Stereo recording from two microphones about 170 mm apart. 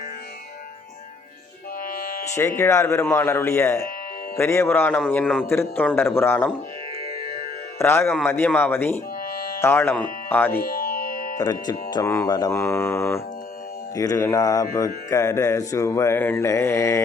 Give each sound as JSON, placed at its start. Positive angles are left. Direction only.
{"t": 2.0, "sound": "music", "side_deg": 60}
{"t": 2.3, "sound": "speech", "side_deg": 15}
{"t": 7.8, "sound": "speech", "side_deg": 15}
{"t": 10.6, "sound": "music", "side_deg": 60}
{"t": 11.3, "sound": "speech", "side_deg": 25}
{"t": 13.9, "sound": "mantra", "side_deg": 20}
{"t": 15.1, "sound": "speech", "side_deg": 15}